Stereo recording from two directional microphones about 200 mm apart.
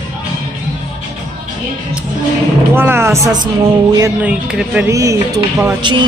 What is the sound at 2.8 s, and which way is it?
Speech, 10° right (ahead or behind).